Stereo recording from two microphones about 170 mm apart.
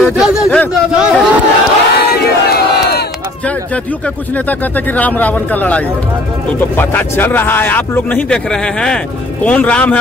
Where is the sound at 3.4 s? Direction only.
10° left (ahead or behind).